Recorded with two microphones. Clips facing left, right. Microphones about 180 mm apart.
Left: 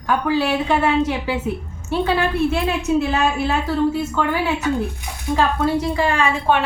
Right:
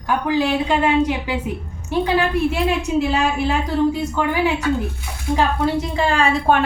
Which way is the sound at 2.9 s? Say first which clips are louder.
Left 1 dB; 15° right (ahead or behind).